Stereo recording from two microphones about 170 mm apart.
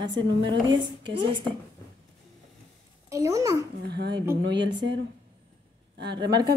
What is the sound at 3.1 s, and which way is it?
Speech, 20° right (ahead or behind).